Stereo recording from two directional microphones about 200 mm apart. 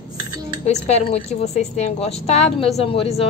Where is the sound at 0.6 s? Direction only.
30° left (ahead or behind).